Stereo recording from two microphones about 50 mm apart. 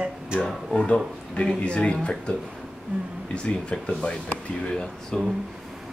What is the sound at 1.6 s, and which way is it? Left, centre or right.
Speech, left.